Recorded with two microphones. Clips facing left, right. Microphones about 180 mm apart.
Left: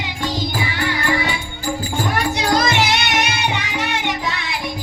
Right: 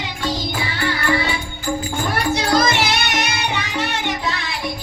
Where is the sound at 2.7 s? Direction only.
15° left (ahead or behind).